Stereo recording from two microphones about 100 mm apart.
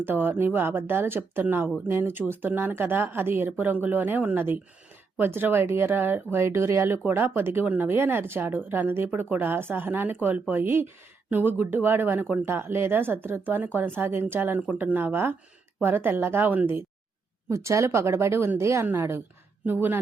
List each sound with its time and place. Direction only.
0.0 s speech: 20° right (ahead or behind)